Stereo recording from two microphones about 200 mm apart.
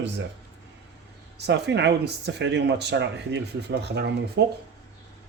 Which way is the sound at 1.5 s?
60° right (ahead or behind).